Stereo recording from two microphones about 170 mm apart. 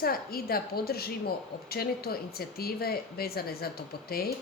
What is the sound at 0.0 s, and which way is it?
Speech, 60° left (ahead or behind).